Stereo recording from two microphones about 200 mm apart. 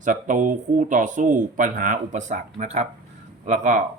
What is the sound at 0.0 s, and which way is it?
Speech, 40° right (ahead or behind).